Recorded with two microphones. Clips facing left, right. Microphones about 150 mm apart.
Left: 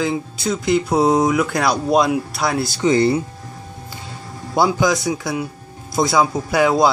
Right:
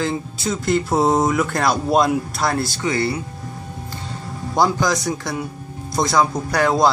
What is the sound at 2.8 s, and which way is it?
Speech, 20° left (ahead or behind).